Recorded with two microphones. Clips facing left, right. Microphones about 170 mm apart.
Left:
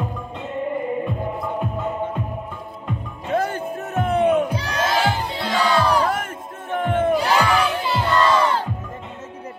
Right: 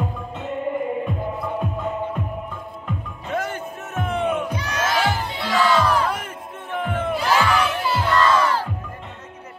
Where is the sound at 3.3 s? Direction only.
35° left (ahead or behind).